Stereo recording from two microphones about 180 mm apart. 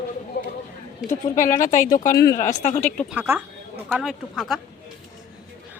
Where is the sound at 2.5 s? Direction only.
40° left (ahead or behind).